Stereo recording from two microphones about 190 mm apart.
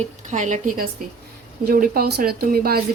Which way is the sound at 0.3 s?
40° right (ahead or behind).